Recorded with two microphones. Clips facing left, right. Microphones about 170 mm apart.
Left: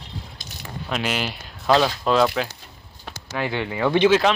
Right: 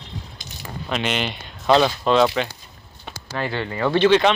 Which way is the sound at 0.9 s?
5° left (ahead or behind).